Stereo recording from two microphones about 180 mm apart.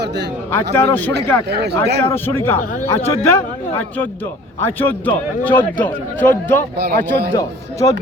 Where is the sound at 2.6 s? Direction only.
45° left (ahead or behind).